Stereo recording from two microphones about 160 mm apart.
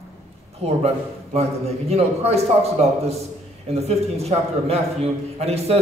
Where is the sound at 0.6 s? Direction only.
40° right (ahead or behind).